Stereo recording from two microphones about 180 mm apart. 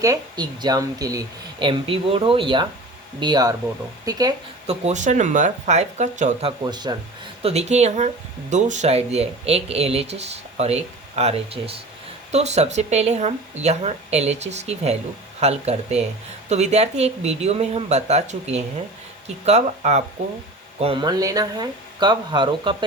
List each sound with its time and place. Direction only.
0.0 s speech: 20° right (ahead or behind)
4.6 s speech: 35° right (ahead or behind)
6.6 s speech: 25° right (ahead or behind)
7.4 s speech: 35° right (ahead or behind)
20.8 s speech: 25° right (ahead or behind)